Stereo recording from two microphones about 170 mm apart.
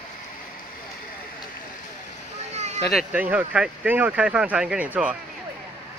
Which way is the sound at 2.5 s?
40° right (ahead or behind).